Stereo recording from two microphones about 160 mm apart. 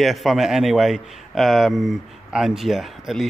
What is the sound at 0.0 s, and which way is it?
A man's voice, centre (ahead or behind).